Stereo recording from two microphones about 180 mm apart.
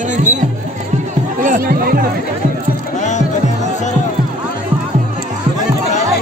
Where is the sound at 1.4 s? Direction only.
50° right (ahead or behind).